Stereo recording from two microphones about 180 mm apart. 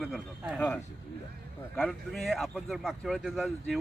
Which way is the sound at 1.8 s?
5° left (ahead or behind).